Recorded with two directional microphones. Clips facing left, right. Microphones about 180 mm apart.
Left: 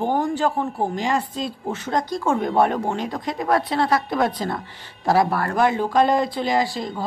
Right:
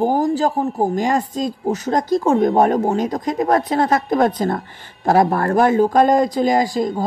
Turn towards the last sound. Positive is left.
turn(degrees=-45)  # may be behind; listen again after turning